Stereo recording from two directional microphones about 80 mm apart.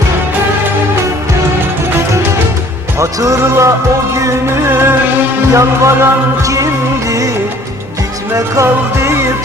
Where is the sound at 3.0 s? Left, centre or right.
Right.